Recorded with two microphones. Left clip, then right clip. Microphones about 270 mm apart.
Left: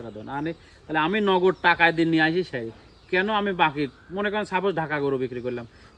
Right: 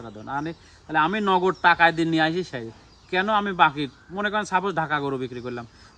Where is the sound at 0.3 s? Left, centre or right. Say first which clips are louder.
Right 2 dB; centre.